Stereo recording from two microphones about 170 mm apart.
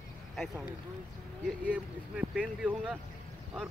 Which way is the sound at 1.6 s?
5° right (ahead or behind).